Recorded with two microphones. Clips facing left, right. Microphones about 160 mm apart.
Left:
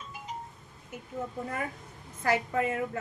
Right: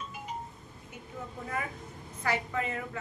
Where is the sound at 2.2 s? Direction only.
45° left (ahead or behind).